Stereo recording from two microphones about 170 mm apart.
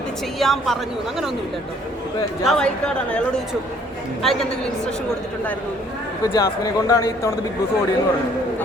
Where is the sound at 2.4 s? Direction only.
5° left (ahead or behind).